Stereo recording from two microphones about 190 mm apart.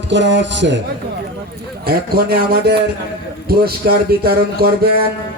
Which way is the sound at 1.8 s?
55° right (ahead or behind).